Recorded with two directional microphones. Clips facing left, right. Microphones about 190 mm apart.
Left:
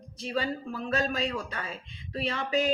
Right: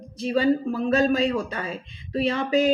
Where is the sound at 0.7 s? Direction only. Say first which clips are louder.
Right 9 dB; 35° right (ahead or behind).